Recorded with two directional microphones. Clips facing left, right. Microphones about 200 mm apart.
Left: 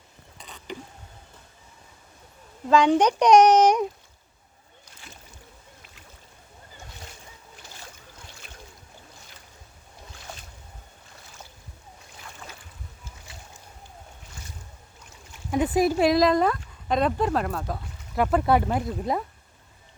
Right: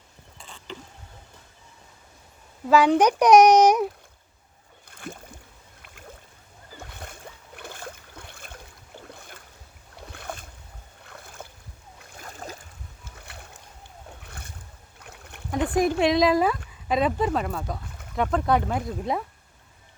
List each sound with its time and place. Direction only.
0.3 s mechanisms: 20° left (ahead or behind)
2.6 s a child's voice: 5° right (ahead or behind)
4.9 s boat: 55° right (ahead or behind)
12.1 s boat: 40° right (ahead or behind)
13.2 s boat: 60° right (ahead or behind)
14.9 s a sound: 60° right (ahead or behind)
15.5 s speech: 5° left (ahead or behind)